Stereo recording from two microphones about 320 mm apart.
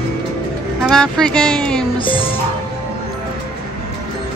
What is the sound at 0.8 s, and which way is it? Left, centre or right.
Speech, centre.